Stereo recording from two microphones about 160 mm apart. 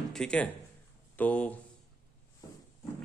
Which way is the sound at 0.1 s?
5° left (ahead or behind).